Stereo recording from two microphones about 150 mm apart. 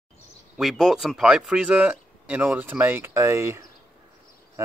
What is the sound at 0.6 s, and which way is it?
Speech, 5° right (ahead or behind).